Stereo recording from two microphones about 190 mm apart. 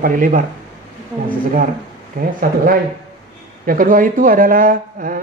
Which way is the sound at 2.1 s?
45° right (ahead or behind).